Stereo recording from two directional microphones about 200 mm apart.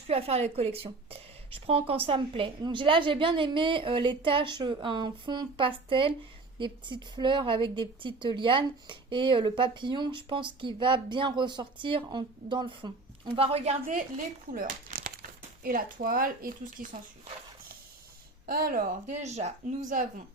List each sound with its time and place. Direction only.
0.1 s a woman's voice: 30° right (ahead or behind)
13.8 s speech: 40° right (ahead or behind)
18.4 s speech: 45° right (ahead or behind)